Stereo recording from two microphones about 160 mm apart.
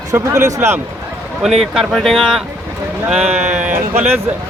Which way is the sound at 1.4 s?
Centre (ahead or behind).